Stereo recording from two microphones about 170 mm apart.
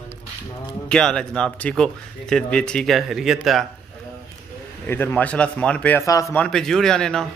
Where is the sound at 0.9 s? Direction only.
5° left (ahead or behind).